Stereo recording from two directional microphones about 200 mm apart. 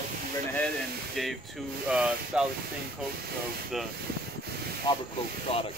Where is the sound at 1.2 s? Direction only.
Centre (ahead or behind).